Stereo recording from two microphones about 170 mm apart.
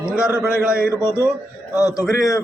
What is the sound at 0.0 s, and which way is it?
Speech, 5° right (ahead or behind).